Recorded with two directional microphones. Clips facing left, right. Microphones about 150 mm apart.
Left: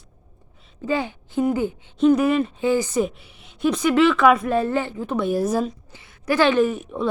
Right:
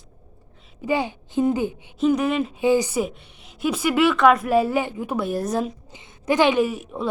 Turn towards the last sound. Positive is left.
turn(degrees=-5)  # may be behind; listen again after turning